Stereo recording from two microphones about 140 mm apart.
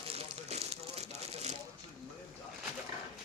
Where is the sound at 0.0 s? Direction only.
45° right (ahead or behind).